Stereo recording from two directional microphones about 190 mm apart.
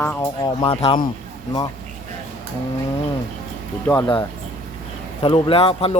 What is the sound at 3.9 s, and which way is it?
Speech, 20° left (ahead or behind).